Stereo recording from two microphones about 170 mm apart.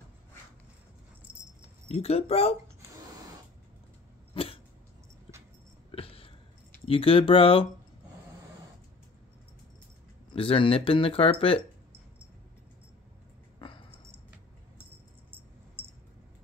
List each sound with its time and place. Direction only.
1.3 s keys jangling: 30° right (ahead or behind)
1.9 s speech: 35° left (ahead or behind)
4.3 s cough: 35° left (ahead or behind)
5.9 s a sound: 35° left (ahead or behind)
6.9 s speech: 30° left (ahead or behind)
10.3 s speech: 30° left (ahead or behind)
13.6 s a sound: 30° left (ahead or behind)